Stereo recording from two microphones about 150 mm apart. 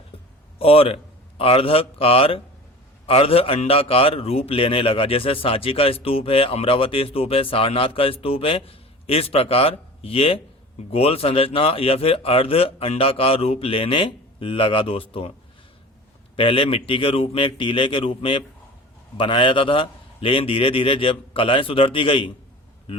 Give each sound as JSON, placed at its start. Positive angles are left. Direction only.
{"t": 0.6, "sound": "a man's voice", "side_deg": 40}
{"t": 16.3, "sound": "a man's voice", "side_deg": 35}